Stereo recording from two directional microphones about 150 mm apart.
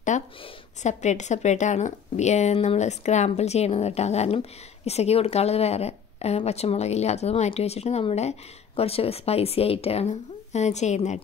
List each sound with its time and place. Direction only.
0.1 s a woman's voice: 50° left (ahead or behind)